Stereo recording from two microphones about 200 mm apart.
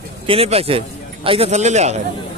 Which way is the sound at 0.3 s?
30° right (ahead or behind).